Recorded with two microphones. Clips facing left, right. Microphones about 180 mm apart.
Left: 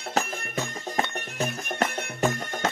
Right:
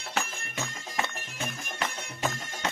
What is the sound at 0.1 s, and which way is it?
Music, 40° left (ahead or behind).